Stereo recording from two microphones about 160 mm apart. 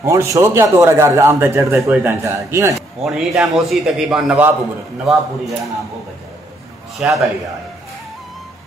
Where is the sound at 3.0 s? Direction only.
Centre (ahead or behind).